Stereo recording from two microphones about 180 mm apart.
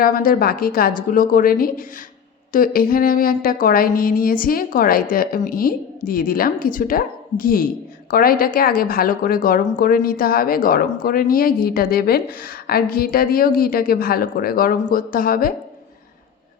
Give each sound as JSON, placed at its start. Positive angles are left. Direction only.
{"t": 0.0, "sound": "a woman's voice", "side_deg": 50}